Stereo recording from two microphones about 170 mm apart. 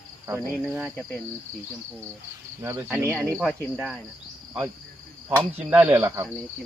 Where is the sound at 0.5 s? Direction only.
Centre (ahead or behind).